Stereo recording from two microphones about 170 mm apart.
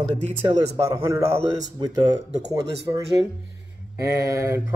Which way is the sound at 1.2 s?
40° right (ahead or behind).